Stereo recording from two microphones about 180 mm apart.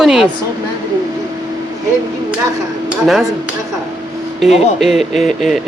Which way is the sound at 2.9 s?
Centre (ahead or behind).